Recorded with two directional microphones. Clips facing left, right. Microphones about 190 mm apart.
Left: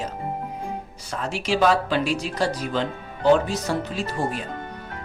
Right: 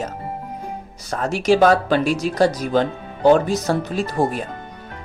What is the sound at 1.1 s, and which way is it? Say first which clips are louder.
Speech: right 8 dB; 45° right (ahead or behind).